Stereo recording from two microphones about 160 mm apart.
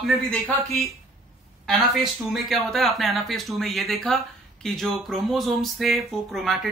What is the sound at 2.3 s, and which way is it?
Speech, centre (ahead or behind).